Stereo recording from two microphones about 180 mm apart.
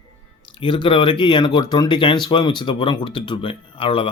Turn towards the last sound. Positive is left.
turn(degrees=30)  # may be behind; listen again after turning